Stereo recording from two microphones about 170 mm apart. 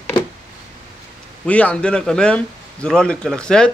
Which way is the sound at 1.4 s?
5° left (ahead or behind).